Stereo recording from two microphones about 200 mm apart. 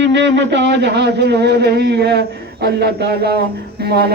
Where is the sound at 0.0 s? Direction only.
60° right (ahead or behind).